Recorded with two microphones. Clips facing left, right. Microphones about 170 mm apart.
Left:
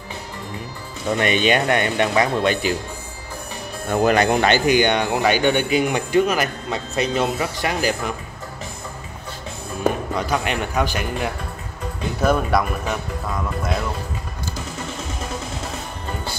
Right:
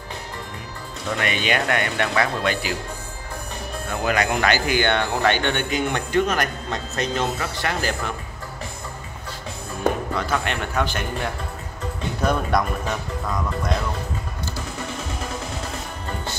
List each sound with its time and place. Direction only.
1.1 s speech: 20° left (ahead or behind)
3.9 s speech: 40° left (ahead or behind); by 8.1 s 15° left (ahead or behind)
10.1 s speech: 15° left (ahead or behind)